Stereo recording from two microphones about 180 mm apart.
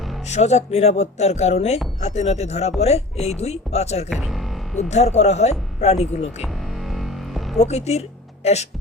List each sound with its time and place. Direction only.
0.3 s speech: 40° left (ahead or behind)
4.1 s music: centre (ahead or behind)
4.8 s speech: 40° left (ahead or behind)
6.4 s music: centre (ahead or behind)
7.6 s speech: 35° left (ahead or behind)